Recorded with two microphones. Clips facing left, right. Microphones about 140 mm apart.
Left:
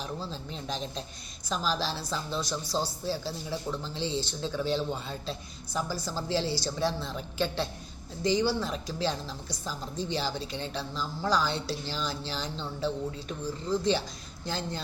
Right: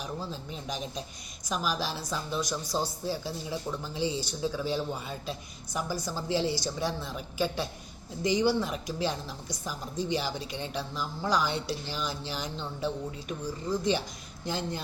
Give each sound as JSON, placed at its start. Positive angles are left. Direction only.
{"t": 0.0, "sound": "a woman's voice", "side_deg": -10}